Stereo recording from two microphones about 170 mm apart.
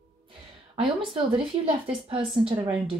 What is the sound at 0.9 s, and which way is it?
A woman's voice, 35° right (ahead or behind).